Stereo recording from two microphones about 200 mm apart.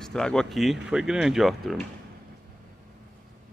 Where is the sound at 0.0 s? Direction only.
5° left (ahead or behind).